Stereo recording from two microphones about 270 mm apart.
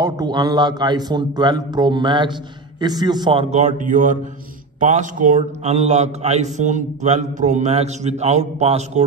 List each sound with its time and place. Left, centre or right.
0.0 s a man's voice: centre